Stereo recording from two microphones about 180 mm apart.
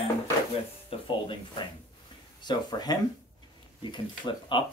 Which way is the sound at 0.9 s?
30° left (ahead or behind).